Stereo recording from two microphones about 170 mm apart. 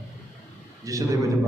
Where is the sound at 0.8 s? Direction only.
20° right (ahead or behind).